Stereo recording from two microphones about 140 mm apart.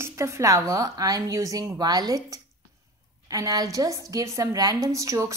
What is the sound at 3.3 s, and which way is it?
A woman's voice, 25° right (ahead or behind).